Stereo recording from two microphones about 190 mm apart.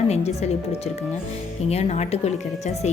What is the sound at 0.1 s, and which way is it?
Speech, 35° left (ahead or behind).